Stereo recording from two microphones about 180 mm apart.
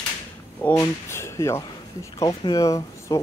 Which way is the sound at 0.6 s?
10° left (ahead or behind).